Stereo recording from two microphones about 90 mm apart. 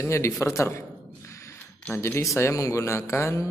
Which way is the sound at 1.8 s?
30° left (ahead or behind).